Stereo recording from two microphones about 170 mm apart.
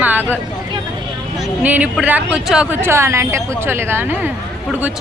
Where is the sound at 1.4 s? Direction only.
10° right (ahead or behind).